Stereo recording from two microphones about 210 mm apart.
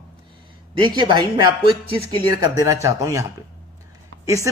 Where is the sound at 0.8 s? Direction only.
20° right (ahead or behind).